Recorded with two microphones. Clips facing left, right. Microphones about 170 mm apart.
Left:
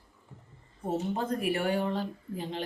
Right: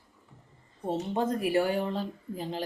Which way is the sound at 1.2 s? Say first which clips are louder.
Right 3 dB; 30° right (ahead or behind).